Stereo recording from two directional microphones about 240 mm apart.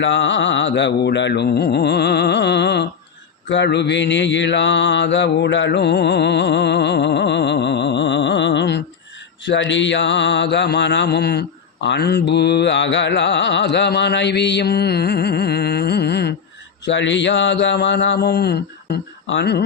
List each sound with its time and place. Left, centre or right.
0.0 s mantra: left